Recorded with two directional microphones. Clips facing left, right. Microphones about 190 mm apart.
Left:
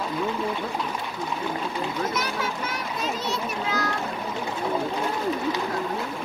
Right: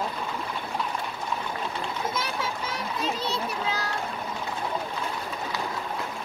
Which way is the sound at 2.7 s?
30° right (ahead or behind).